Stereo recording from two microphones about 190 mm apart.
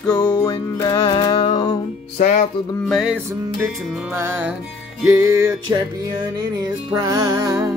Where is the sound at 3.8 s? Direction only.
5° right (ahead or behind).